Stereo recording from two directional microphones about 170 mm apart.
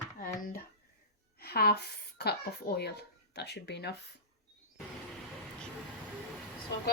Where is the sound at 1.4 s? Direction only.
65° left (ahead or behind).